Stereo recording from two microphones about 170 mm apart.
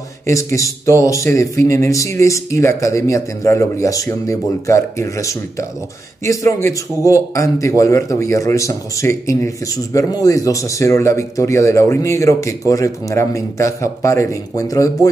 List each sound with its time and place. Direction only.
0.3 s speech: 20° left (ahead or behind)